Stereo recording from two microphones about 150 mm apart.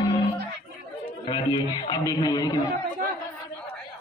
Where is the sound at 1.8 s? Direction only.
25° left (ahead or behind).